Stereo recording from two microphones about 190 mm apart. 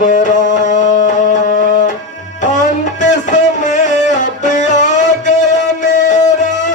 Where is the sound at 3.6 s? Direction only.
40° left (ahead or behind).